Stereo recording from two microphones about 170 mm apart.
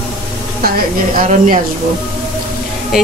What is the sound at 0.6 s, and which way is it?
Speech, 55° right (ahead or behind).